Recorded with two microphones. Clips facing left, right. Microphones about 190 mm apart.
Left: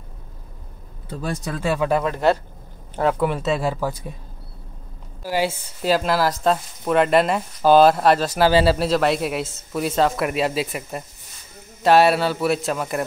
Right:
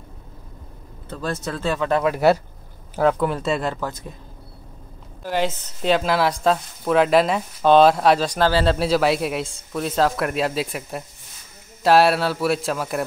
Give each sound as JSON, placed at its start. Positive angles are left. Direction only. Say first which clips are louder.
{"t": 1.0, "sound": "speech", "louder": "even", "side_deg": 15}
{"t": 2.0, "sound": "speech", "louder": "right 2 dB", "side_deg": -10}
{"t": 3.0, "sound": "speech", "louder": "right 1 dB", "side_deg": 0}
{"t": 5.2, "sound": "speech", "louder": "even", "side_deg": 10}
{"t": 8.5, "sound": "speech", "louder": "left 3 dB", "side_deg": 15}
{"t": 8.7, "sound": "speech", "louder": "even", "side_deg": 0}